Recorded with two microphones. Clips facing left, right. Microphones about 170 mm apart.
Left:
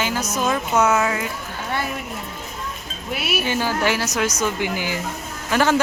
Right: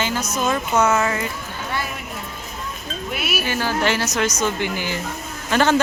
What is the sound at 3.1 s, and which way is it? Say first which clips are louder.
A woman's voice: left 2 dB; 25° left (ahead or behind).